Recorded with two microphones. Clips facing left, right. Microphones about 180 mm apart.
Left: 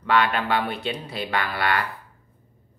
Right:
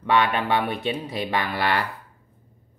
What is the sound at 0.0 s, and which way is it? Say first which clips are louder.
Speech: right 1 dB; 15° right (ahead or behind).